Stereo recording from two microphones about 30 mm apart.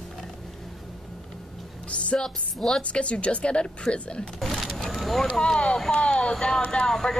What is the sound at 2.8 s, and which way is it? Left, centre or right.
A woman's voice, left.